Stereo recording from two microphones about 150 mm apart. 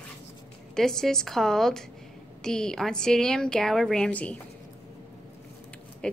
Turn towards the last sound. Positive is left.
turn(degrees=5)  # may be behind; listen again after turning